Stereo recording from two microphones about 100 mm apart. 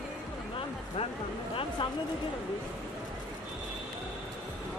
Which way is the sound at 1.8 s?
55° left (ahead or behind).